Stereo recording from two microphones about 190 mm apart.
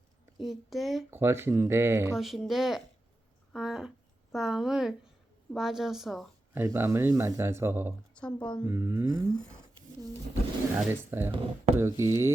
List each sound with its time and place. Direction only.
0.4 s speech: centre (ahead or behind)
1.1 s speech: 10° right (ahead or behind)
2.1 s a woman's voice: centre (ahead or behind)
6.6 s speech: 15° right (ahead or behind)
8.1 s speech: 5° left (ahead or behind)
8.6 s speech: 15° right (ahead or behind)
10.8 s speech: 10° right (ahead or behind)
11.3 s speech: 35° right (ahead or behind)
11.8 s speech: 15° right (ahead or behind)